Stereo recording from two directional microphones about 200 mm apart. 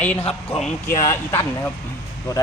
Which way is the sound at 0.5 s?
30° left (ahead or behind).